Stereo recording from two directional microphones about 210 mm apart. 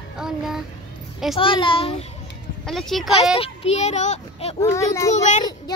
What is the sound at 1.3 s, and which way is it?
Speech, 25° left (ahead or behind).